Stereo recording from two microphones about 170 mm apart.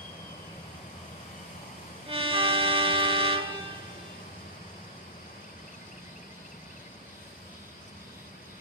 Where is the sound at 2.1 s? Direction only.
30° right (ahead or behind).